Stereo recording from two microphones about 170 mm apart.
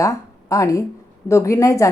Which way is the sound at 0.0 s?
20° left (ahead or behind).